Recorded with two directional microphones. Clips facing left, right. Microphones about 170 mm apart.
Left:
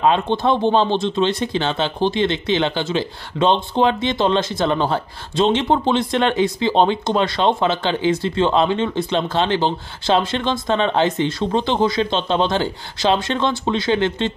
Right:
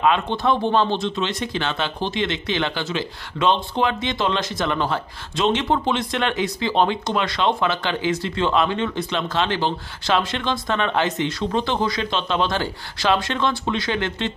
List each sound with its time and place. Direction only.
0.0 s speech: 30° left (ahead or behind)